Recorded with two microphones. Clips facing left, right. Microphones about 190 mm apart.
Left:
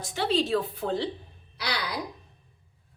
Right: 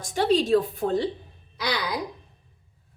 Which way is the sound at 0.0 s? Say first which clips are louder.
Right 4 dB; 45° right (ahead or behind).